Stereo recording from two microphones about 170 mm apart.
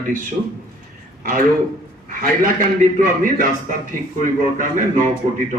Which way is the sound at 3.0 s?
50° right (ahead or behind).